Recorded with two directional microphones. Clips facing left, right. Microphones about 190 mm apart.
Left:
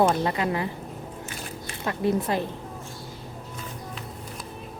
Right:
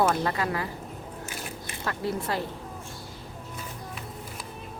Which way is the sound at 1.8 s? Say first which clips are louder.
Left 6 dB; 20° left (ahead or behind).